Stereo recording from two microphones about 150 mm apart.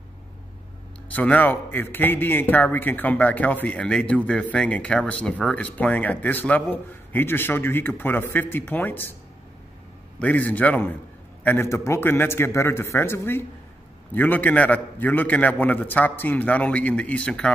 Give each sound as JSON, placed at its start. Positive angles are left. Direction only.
{"t": 1.1, "sound": "speech", "side_deg": 10}
{"t": 10.1, "sound": "speech", "side_deg": 10}